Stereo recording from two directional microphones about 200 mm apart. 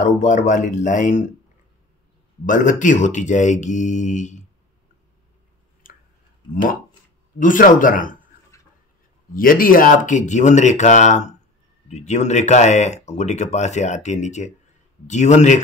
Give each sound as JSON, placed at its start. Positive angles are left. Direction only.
{"t": 0.0, "sound": "speech", "side_deg": 35}
{"t": 2.4, "sound": "speech", "side_deg": 40}
{"t": 5.9, "sound": "a sound", "side_deg": 45}
{"t": 6.5, "sound": "speech", "side_deg": 45}
{"t": 9.3, "sound": "speech", "side_deg": 45}